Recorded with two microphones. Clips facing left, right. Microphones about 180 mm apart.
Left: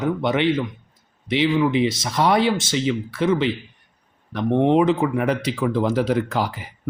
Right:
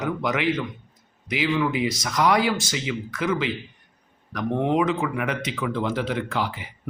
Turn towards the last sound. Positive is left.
turn(degrees=40)  # may be behind; listen again after turning